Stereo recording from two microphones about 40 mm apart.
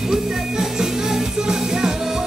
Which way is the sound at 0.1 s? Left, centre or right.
Centre.